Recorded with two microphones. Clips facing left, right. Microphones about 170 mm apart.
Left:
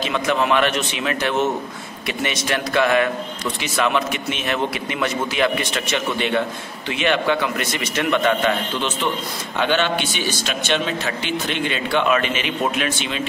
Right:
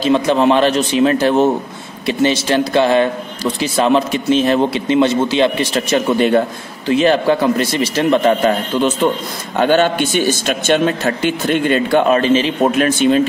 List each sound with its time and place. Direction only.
0.0 s a man's voice: 30° right (ahead or behind)